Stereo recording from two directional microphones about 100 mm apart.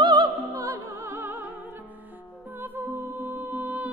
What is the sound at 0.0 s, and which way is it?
Music, 45° right (ahead or behind).